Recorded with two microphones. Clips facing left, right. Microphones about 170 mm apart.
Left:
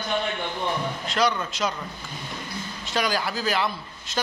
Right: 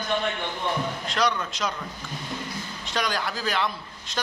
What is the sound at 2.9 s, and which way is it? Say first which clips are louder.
A man's voice: left 2 dB; 5° left (ahead or behind).